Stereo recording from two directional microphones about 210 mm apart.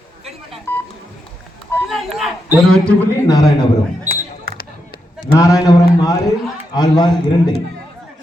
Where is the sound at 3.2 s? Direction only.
15° left (ahead or behind).